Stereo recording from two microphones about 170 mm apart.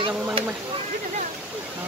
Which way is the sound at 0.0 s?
30° right (ahead or behind).